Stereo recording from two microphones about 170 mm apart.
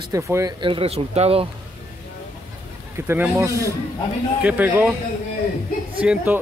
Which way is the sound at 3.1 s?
15° right (ahead or behind).